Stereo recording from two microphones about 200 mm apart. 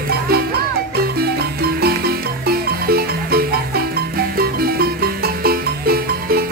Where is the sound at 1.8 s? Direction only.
50° right (ahead or behind).